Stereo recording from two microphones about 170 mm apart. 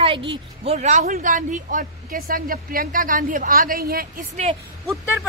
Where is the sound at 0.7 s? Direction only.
45° right (ahead or behind).